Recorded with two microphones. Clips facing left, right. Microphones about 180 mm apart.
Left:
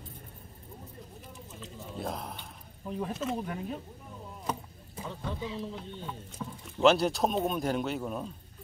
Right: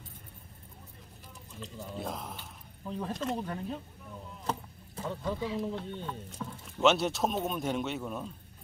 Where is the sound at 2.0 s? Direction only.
Centre (ahead or behind).